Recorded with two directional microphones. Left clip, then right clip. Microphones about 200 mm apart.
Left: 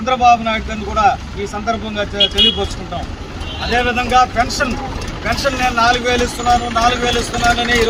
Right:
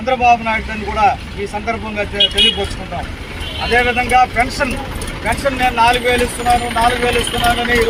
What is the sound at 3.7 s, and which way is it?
Speech, 25° left (ahead or behind).